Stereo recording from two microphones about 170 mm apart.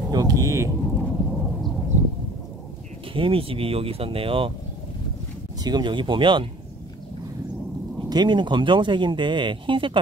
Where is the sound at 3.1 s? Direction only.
30° right (ahead or behind).